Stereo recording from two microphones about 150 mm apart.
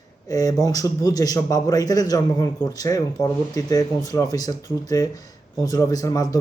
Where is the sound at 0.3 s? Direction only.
25° left (ahead or behind).